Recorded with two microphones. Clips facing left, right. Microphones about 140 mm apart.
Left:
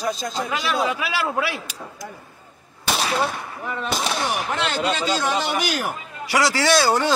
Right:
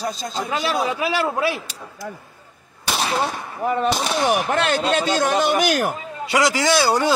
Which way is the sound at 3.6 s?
50° right (ahead or behind).